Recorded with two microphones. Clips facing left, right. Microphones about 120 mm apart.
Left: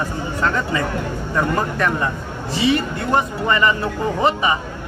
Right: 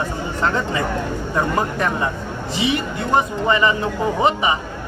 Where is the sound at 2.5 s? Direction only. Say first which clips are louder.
Left 3 dB; 20° right (ahead or behind).